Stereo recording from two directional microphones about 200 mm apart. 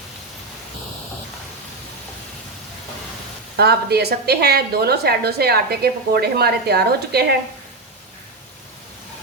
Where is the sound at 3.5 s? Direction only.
55° right (ahead or behind).